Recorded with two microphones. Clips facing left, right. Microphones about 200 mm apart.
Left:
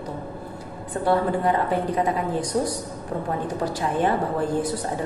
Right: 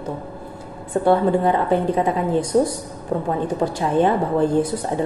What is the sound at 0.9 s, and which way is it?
A woman's voice, 25° right (ahead or behind).